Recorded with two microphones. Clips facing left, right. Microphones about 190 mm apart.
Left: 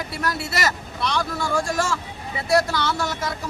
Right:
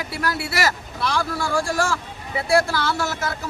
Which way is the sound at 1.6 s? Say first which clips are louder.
Right 2 dB; 20° left (ahead or behind).